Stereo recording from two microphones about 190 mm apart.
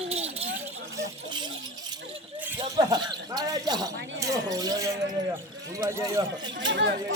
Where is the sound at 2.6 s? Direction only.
20° right (ahead or behind).